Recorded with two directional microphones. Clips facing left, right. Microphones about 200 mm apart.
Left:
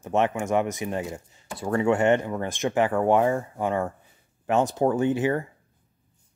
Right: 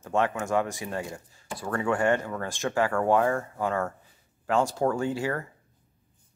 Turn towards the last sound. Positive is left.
turn(degrees=20)  # may be behind; listen again after turning